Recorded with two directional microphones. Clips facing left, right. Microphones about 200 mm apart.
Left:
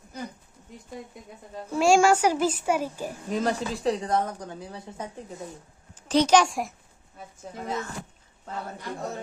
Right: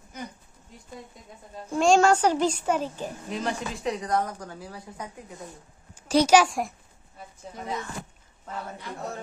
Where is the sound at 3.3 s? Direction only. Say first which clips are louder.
Left 5 dB; 35° left (ahead or behind).